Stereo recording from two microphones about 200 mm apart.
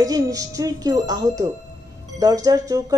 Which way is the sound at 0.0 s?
20° right (ahead or behind).